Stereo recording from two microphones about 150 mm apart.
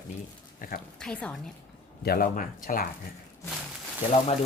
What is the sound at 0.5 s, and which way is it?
Speech, 70° left (ahead or behind).